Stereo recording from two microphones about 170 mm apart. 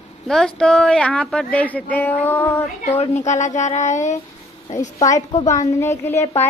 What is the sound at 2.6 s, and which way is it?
Speech, 40° left (ahead or behind).